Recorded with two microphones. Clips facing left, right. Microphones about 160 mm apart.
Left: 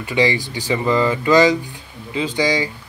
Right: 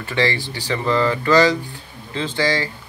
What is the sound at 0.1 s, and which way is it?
Speech, 15° left (ahead or behind).